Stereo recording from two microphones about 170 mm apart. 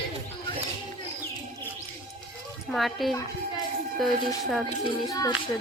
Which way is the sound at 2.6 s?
Centre (ahead or behind).